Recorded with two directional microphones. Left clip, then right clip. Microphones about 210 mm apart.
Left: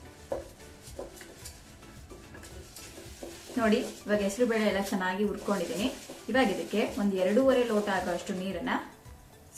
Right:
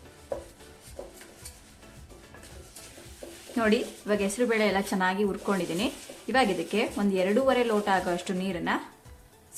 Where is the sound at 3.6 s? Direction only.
45° right (ahead or behind).